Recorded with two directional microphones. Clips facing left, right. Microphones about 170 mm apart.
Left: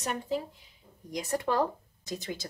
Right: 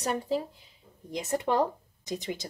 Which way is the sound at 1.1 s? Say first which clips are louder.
Right 2 dB; 25° right (ahead or behind).